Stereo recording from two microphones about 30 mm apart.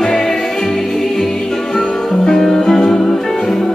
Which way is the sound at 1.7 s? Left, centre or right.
Centre.